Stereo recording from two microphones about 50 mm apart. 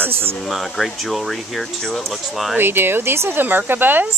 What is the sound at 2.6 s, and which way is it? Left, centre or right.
Speech, right.